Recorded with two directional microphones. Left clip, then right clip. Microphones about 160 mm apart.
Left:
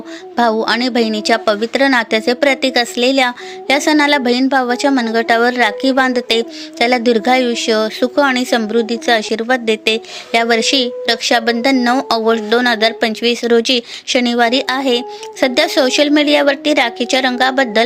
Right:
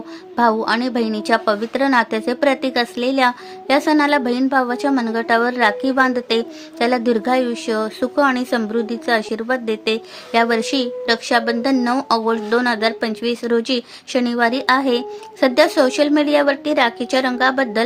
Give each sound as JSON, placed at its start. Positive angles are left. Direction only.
{"t": 0.3, "sound": "a woman's voice", "side_deg": 10}